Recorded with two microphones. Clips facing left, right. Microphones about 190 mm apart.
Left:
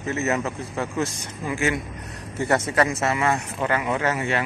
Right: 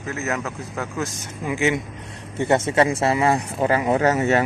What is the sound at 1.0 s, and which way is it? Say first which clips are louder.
Speech: right 2 dB; 15° right (ahead or behind).